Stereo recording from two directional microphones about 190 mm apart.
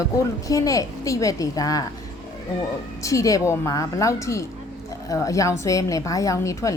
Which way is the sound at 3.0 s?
15° left (ahead or behind).